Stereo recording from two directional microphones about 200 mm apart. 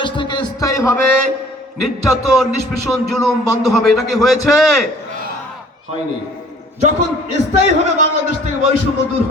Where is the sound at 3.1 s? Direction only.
Centre (ahead or behind).